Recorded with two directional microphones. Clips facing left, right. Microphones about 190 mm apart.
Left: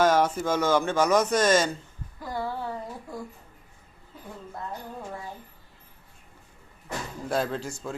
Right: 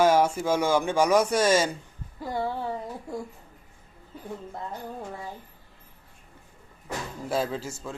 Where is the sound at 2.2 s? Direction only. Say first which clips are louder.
Right 2 dB; 25° right (ahead or behind).